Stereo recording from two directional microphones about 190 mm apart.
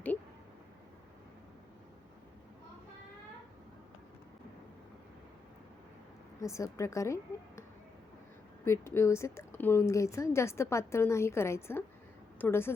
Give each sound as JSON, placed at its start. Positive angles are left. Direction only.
{"t": 6.4, "sound": "speech", "side_deg": 15}
{"t": 8.6, "sound": "speech", "side_deg": 15}